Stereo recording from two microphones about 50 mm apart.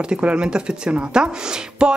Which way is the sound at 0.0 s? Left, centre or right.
Centre.